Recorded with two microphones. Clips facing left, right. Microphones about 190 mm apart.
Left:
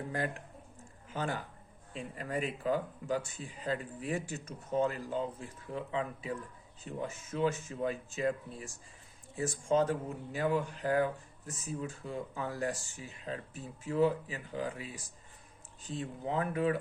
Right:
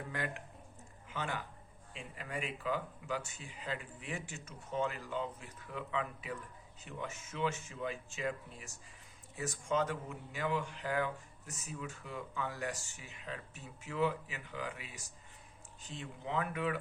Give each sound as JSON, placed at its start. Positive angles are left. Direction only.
{"t": 0.1, "sound": "speech", "side_deg": 35}